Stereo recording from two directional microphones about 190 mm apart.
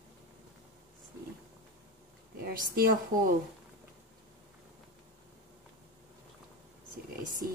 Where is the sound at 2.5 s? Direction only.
50° right (ahead or behind).